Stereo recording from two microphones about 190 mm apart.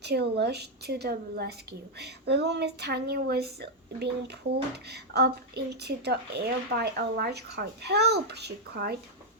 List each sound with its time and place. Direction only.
0.0 s speech: 60° right (ahead or behind)